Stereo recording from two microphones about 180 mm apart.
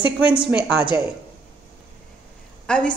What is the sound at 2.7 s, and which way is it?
Speech, 5° left (ahead or behind).